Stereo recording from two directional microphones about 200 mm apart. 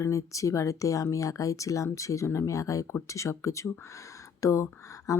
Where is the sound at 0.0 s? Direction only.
15° left (ahead or behind).